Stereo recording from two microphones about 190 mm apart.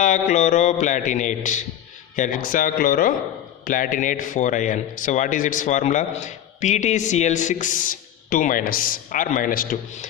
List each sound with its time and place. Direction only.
0.0 s a man's voice: 40° left (ahead or behind)